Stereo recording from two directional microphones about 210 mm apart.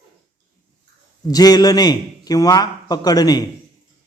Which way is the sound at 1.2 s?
20° left (ahead or behind).